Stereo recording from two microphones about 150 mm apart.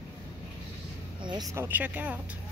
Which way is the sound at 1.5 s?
15° right (ahead or behind).